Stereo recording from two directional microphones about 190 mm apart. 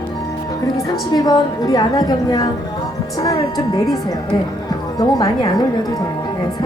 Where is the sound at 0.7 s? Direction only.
20° left (ahead or behind).